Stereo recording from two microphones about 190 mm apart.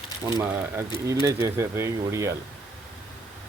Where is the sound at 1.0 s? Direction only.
15° right (ahead or behind).